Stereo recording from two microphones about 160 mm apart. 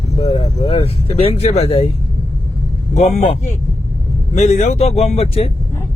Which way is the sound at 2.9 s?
45° left (ahead or behind).